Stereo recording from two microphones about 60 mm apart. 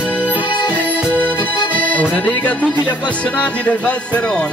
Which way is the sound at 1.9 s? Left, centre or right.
Left.